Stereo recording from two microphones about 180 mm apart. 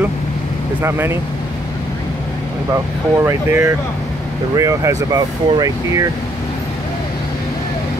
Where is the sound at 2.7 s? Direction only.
15° right (ahead or behind).